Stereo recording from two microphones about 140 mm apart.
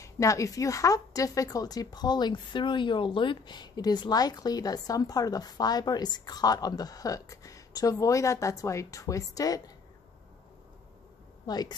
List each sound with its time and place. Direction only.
0.0 s speech: 25° left (ahead or behind)
11.4 s speech: 30° left (ahead or behind)